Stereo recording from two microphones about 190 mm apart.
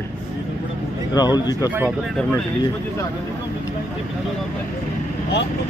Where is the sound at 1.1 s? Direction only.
20° left (ahead or behind).